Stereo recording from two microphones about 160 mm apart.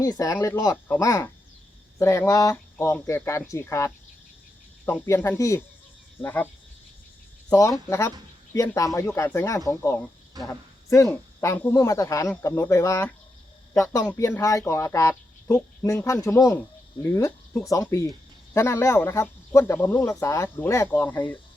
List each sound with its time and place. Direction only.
0.0 s speech: 20° left (ahead or behind)
5.0 s speech: 15° left (ahead or behind)
7.5 s speech: 20° left (ahead or behind)